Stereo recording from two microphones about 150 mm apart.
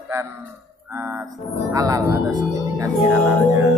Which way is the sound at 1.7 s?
25° right (ahead or behind).